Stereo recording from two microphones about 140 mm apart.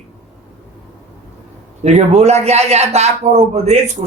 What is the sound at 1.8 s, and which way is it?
A man's voice, 50° right (ahead or behind).